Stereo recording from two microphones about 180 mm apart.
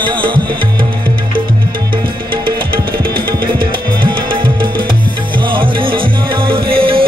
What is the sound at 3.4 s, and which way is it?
Music, 25° right (ahead or behind).